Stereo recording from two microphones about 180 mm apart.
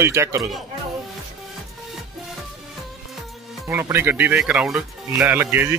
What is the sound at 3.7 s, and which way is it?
Speech, 15° right (ahead or behind).